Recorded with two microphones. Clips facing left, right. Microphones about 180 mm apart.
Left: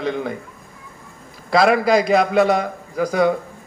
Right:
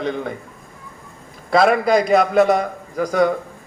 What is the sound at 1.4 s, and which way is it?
A man's voice, centre (ahead or behind).